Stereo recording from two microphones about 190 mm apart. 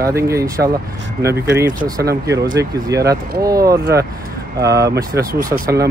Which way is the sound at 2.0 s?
60° right (ahead or behind).